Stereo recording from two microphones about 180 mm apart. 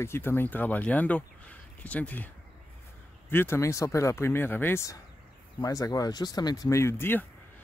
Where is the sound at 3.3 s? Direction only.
15° left (ahead or behind).